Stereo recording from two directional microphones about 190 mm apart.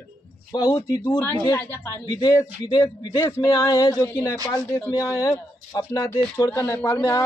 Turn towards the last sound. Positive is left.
turn(degrees=15)  # may be behind; listen again after turning